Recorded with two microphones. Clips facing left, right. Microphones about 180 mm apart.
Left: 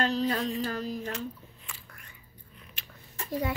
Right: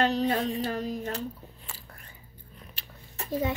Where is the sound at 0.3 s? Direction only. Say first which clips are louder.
Right 2 dB; 30° right (ahead or behind).